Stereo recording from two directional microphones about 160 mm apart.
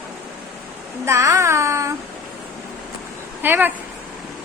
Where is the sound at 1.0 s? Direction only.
20° right (ahead or behind).